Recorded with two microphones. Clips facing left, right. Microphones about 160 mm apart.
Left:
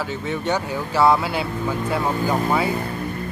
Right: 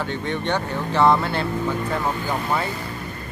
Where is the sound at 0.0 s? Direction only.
5° left (ahead or behind).